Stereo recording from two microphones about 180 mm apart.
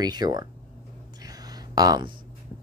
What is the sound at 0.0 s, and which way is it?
Speech, 20° right (ahead or behind).